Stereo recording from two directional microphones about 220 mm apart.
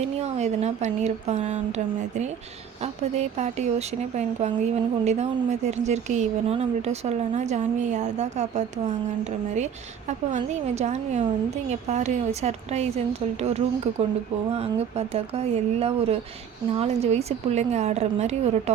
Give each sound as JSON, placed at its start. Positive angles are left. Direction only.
{"t": 0.0, "sound": "speech", "side_deg": -30}
{"t": 2.8, "sound": "speech", "side_deg": -30}
{"t": 10.3, "sound": "speech", "side_deg": -30}